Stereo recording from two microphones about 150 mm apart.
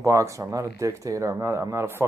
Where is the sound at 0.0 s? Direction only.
20° right (ahead or behind).